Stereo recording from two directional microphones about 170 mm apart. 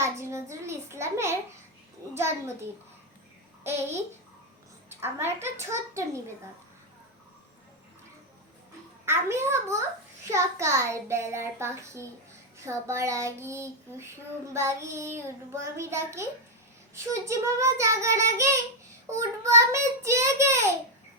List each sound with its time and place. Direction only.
0.0 s a sound: 15° right (ahead or behind)
2.1 s child singing: 15° right (ahead or behind)
9.0 s child singing: 15° right (ahead or behind)